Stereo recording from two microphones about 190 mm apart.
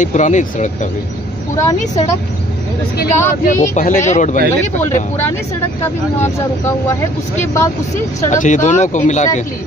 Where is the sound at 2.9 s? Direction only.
55° left (ahead or behind).